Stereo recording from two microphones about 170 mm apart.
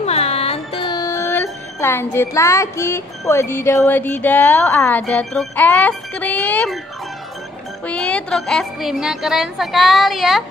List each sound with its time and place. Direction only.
0.0 s music: 40° left (ahead or behind)
0.9 s speech: 20° left (ahead or behind)
7.8 s a woman's voice: 5° left (ahead or behind)